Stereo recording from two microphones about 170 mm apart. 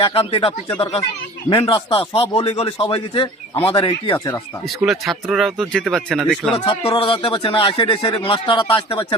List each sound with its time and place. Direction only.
0.0 s speech: 35° left (ahead or behind)
4.6 s speech: centre (ahead or behind)
6.7 s speech: 30° left (ahead or behind)